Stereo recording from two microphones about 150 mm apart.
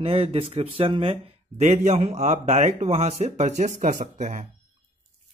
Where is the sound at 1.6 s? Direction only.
50° right (ahead or behind).